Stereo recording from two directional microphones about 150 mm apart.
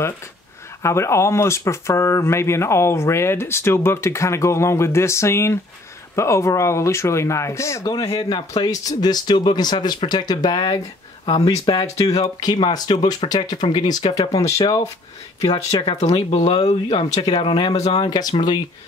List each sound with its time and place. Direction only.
0.8 s speech: 20° left (ahead or behind)
15.4 s speech: 35° left (ahead or behind)